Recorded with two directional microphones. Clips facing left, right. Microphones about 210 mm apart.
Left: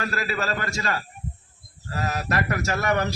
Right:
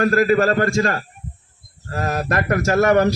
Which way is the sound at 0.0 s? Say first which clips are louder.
Right 12 dB; 50° right (ahead or behind).